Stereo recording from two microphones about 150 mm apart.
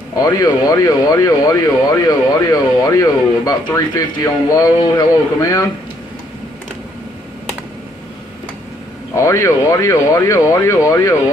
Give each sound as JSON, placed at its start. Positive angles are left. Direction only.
{"t": 0.1, "sound": "speech", "side_deg": 25}
{"t": 9.1, "sound": "speech", "side_deg": 20}